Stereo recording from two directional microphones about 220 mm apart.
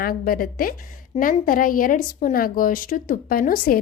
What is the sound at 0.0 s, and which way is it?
A woman's voice, 40° left (ahead or behind).